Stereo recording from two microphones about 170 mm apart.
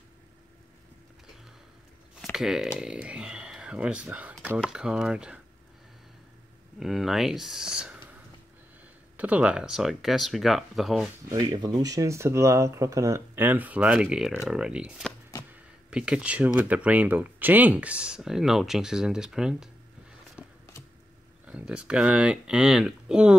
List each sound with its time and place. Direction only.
2.3 s speech: centre (ahead or behind)
6.8 s speech: centre (ahead or behind)
9.1 s speech: 10° right (ahead or behind)
11.2 s speech: 25° right (ahead or behind); by 19.7 s 5° right (ahead or behind)
20.3 s a sound: 15° left (ahead or behind)
21.5 s speech: 5° right (ahead or behind)